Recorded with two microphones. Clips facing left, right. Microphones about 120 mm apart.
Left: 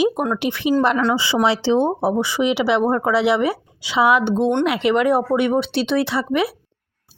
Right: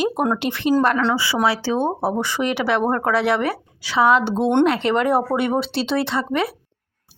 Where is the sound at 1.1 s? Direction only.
25° left (ahead or behind).